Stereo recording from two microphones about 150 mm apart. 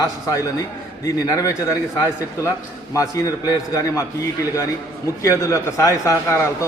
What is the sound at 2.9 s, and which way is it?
A man's voice, 20° left (ahead or behind).